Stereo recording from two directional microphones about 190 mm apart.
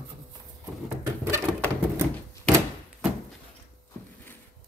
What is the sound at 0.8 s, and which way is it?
Drawer open or close, 15° right (ahead or behind).